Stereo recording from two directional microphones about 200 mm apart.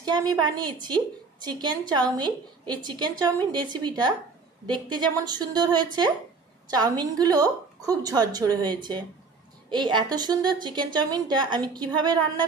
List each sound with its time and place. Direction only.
0.0 s a woman's voice: 20° right (ahead or behind)